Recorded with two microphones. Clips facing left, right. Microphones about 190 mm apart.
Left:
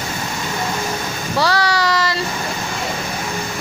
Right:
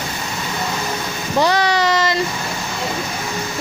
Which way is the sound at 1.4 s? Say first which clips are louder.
Right 2 dB; 20° right (ahead or behind).